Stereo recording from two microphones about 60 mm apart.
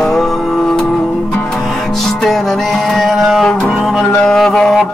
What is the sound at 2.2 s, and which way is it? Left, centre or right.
Music, centre.